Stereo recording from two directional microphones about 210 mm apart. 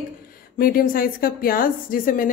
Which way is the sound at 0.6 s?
45° left (ahead or behind).